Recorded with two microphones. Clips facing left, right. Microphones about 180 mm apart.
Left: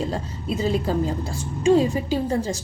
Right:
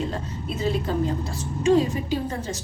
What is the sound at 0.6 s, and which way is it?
Speech, 30° left (ahead or behind).